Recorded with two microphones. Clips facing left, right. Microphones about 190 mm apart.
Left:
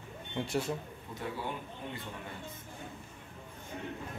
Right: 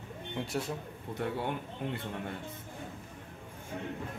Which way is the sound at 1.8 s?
70° right (ahead or behind).